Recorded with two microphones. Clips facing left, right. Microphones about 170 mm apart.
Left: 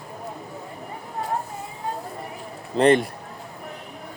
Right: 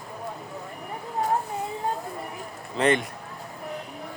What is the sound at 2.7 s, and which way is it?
Speech, 35° left (ahead or behind).